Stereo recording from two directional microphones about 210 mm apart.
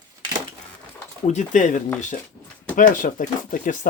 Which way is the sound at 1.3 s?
35° left (ahead or behind).